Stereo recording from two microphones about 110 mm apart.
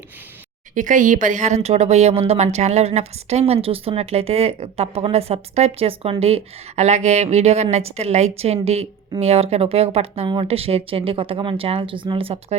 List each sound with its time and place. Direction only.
1.3 s speech: 90° right
6.0 s speech: 60° right (ahead or behind)